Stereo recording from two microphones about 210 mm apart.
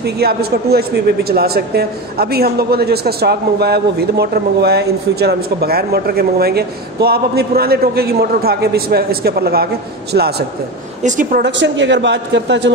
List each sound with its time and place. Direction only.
0.0 s speech: 50° right (ahead or behind)
11.0 s a woman's voice: 35° right (ahead or behind)
11.4 s a man's voice: 60° right (ahead or behind)